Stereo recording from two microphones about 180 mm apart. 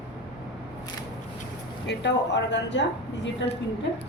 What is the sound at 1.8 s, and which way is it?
Speech, 75° left (ahead or behind).